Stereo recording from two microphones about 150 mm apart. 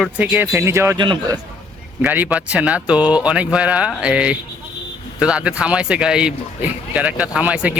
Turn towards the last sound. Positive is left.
turn(degrees=-10)  # may be behind; listen again after turning